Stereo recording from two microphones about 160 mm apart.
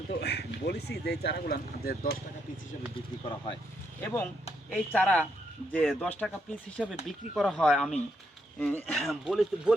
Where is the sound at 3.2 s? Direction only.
35° left (ahead or behind).